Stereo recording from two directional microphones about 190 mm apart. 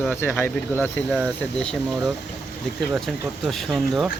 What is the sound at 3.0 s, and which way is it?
Speech, centre (ahead or behind).